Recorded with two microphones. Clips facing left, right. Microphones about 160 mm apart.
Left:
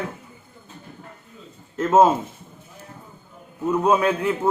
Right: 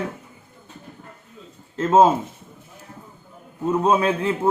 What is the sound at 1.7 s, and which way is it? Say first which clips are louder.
Speech: even; 30° right (ahead or behind).